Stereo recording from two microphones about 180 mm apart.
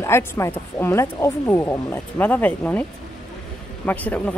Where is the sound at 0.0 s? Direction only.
15° left (ahead or behind).